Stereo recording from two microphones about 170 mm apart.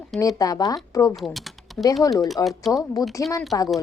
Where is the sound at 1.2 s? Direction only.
Centre (ahead or behind).